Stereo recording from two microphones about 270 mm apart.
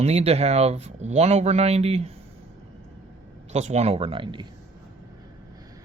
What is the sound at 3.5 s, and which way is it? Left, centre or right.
Speech, right.